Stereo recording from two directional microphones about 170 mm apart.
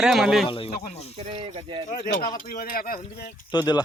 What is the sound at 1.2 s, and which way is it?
Speech, 40° right (ahead or behind).